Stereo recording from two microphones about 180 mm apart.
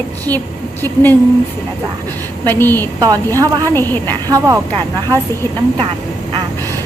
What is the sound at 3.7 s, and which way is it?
Speech, 10° left (ahead or behind).